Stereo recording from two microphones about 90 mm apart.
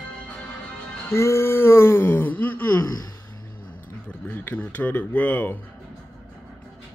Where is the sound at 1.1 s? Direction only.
30° left (ahead or behind).